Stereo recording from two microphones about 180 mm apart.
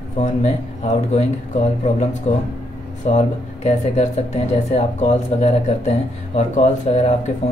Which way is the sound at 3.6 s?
40° left (ahead or behind).